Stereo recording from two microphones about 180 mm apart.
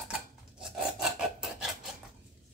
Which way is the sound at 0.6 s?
5° right (ahead or behind).